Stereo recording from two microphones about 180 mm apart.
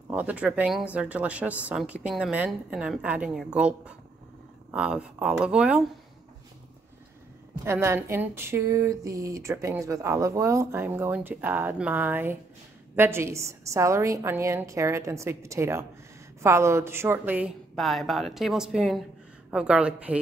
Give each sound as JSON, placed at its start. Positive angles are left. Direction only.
{"t": 0.1, "sound": "a woman's voice", "side_deg": -10}
{"t": 7.6, "sound": "a woman's voice", "side_deg": -15}